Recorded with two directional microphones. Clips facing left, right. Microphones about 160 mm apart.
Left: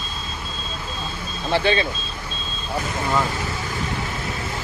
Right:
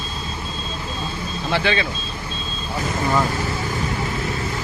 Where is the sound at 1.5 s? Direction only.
30° left (ahead or behind).